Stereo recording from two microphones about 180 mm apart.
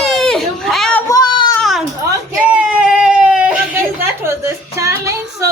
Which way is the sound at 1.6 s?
Centre (ahead or behind).